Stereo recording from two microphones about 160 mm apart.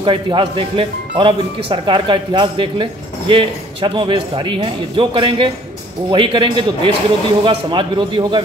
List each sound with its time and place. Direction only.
0.0 s speech: 30° right (ahead or behind)